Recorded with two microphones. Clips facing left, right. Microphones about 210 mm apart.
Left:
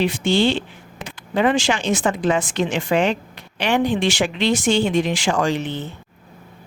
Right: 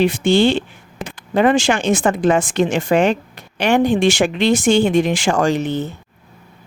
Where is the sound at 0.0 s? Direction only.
50° right (ahead or behind).